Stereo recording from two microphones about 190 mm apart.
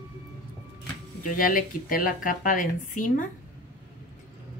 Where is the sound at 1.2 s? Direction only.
45° left (ahead or behind).